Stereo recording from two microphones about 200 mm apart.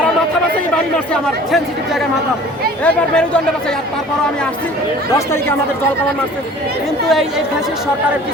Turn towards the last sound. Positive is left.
turn(degrees=0)  # may be behind; listen again after turning